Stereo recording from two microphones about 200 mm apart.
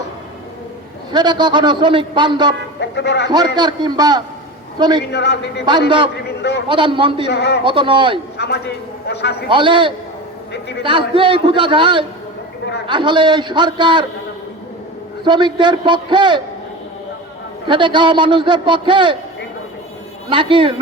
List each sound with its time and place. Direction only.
1.1 s a man's voice: 20° right (ahead or behind)
2.9 s a man's voice: 60° left (ahead or behind)
3.2 s a man's voice: 20° right (ahead or behind)
5.1 s a man's voice: 60° left (ahead or behind)
6.7 s a man's voice: 25° right (ahead or behind)
7.3 s a man's voice: 60° left (ahead or behind)
7.6 s a man's voice: 25° right (ahead or behind)
8.4 s a man's voice: 55° left (ahead or behind)
9.5 s a man's voice: 25° right (ahead or behind)
10.5 s a man's voice: 55° left (ahead or behind)
10.8 s a man's voice: 25° right (ahead or behind)
15.2 s a man's voice: 25° right (ahead or behind)
17.7 s a man's voice: 25° right (ahead or behind)
20.3 s a man's voice: 25° right (ahead or behind)